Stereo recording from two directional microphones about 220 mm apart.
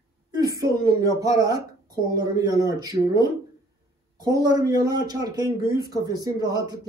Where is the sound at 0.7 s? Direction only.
45° right (ahead or behind).